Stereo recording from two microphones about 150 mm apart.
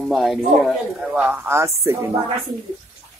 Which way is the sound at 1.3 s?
15° right (ahead or behind).